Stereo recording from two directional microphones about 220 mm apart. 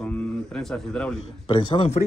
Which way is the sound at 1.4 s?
20° left (ahead or behind).